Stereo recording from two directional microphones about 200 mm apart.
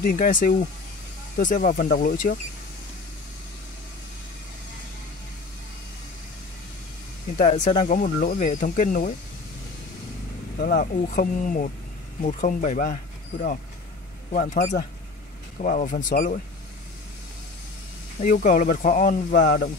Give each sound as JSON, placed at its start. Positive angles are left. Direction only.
{"t": 0.0, "sound": "speech", "side_deg": 40}
{"t": 7.3, "sound": "speech", "side_deg": 40}
{"t": 10.6, "sound": "speech", "side_deg": 45}
{"t": 14.3, "sound": "speech", "side_deg": 40}
{"t": 18.2, "sound": "speech", "side_deg": 40}